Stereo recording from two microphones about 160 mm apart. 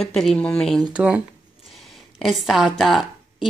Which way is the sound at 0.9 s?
5° right (ahead or behind).